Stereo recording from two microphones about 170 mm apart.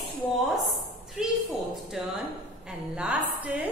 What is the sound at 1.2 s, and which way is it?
A woman's voice, 5° right (ahead or behind).